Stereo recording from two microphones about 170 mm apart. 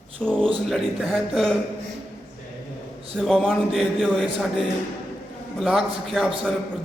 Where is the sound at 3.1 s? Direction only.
5° left (ahead or behind).